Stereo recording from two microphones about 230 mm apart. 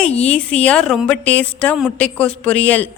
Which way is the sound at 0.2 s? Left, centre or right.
Centre.